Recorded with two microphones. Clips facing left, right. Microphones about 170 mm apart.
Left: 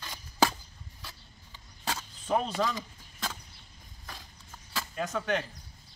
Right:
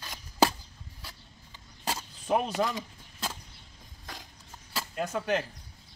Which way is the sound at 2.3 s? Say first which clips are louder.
Right 1 dB; 15° right (ahead or behind).